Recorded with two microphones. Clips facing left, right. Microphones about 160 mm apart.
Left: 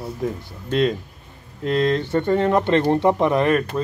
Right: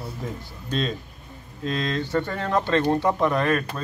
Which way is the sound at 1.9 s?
20° left (ahead or behind).